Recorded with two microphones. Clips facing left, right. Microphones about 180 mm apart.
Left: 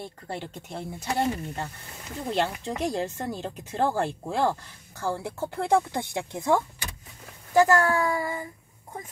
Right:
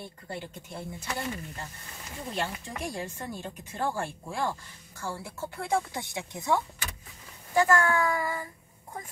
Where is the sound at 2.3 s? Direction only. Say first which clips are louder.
Left 7 dB; 90° left; by 6.6 s 55° left (ahead or behind).